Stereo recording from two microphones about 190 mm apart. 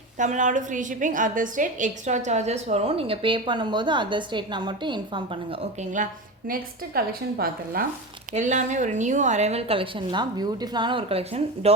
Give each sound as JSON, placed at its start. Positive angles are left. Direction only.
{"t": 0.2, "sound": "a woman's voice", "side_deg": -40}
{"t": 6.5, "sound": "a woman's voice", "side_deg": -50}
{"t": 8.3, "sound": "a woman's voice", "side_deg": -40}